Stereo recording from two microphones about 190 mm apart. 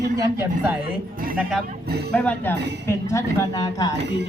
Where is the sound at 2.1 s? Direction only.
10° left (ahead or behind).